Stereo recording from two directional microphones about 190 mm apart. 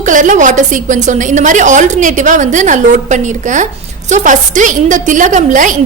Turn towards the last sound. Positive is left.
turn(degrees=-40)  # may be behind; listen again after turning